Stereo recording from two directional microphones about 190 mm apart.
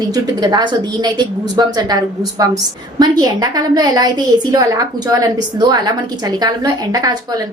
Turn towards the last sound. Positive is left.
turn(degrees=-20)  # may be behind; listen again after turning